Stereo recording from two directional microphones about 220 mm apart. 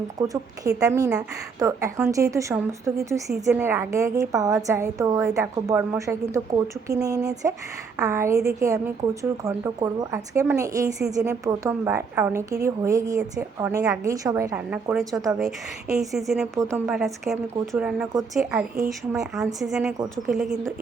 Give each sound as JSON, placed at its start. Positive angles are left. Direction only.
{"t": 0.2, "sound": "a woman's voice", "side_deg": -15}
{"t": 16.6, "sound": "a woman's voice", "side_deg": -15}
{"t": 16.8, "sound": "speech", "side_deg": 0}
{"t": 18.8, "sound": "a woman's voice", "side_deg": -15}
{"t": 19.1, "sound": "speech", "side_deg": 0}